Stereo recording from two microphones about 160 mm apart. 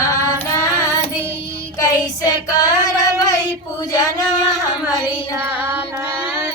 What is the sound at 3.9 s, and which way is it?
Singing, 20° left (ahead or behind).